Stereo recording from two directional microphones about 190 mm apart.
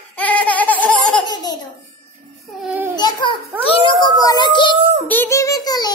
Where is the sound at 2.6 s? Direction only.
10° right (ahead or behind).